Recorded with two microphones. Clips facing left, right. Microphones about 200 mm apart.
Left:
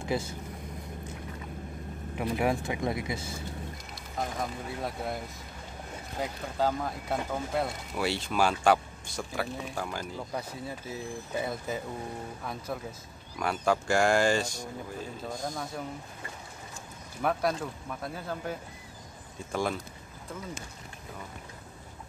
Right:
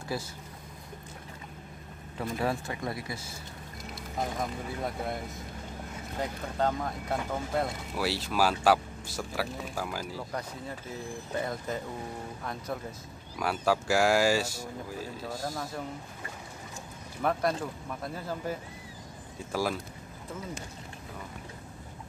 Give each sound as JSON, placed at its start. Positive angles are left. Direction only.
{"t": 0.0, "sound": "speech", "side_deg": 20}
{"t": 2.1, "sound": "speech", "side_deg": 15}
{"t": 4.2, "sound": "speech", "side_deg": 0}
{"t": 11.3, "sound": "speech", "side_deg": 5}
{"t": 13.4, "sound": "speech", "side_deg": -5}
{"t": 17.2, "sound": "speech", "side_deg": 0}